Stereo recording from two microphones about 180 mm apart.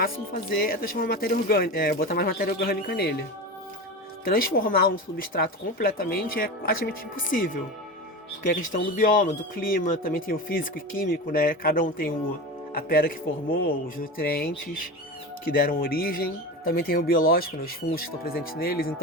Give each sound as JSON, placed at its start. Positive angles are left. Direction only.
{"t": 0.0, "sound": "speech", "side_deg": 55}
{"t": 4.2, "sound": "speech", "side_deg": 55}
{"t": 15.5, "sound": "speech", "side_deg": 50}